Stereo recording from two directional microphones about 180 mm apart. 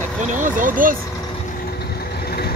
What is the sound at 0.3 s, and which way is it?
Speech, 45° right (ahead or behind).